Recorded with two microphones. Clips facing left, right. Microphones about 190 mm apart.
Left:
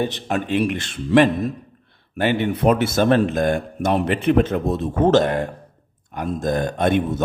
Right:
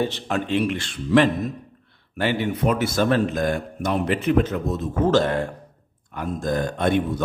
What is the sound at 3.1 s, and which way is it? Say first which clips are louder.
Speech: left 4 dB; 55° left (ahead or behind).